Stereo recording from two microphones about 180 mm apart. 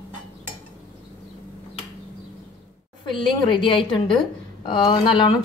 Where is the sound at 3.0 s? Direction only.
25° left (ahead or behind).